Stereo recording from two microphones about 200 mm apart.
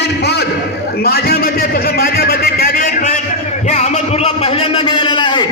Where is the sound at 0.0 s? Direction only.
55° left (ahead or behind).